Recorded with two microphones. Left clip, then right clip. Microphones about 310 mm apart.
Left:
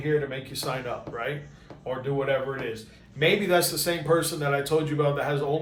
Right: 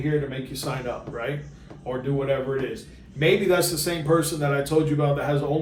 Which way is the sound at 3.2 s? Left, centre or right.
Centre.